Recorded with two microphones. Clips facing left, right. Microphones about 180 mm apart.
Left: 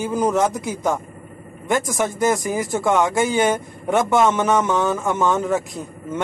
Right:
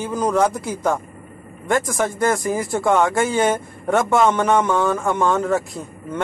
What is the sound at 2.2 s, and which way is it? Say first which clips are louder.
Speech: even; 20° left (ahead or behind).